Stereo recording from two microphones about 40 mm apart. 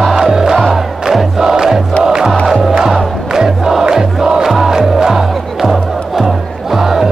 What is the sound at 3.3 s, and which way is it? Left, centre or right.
Crowd, centre.